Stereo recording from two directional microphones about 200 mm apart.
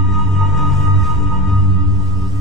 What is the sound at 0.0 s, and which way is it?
Music, centre (ahead or behind).